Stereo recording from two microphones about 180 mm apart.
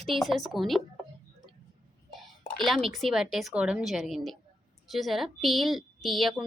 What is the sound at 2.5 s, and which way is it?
A woman's voice, centre (ahead or behind).